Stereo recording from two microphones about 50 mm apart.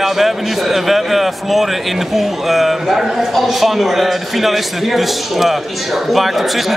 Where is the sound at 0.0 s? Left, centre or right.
Centre.